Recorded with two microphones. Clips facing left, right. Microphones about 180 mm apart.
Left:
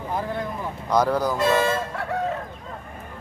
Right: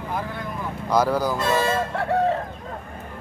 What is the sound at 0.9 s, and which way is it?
Speech, 5° right (ahead or behind).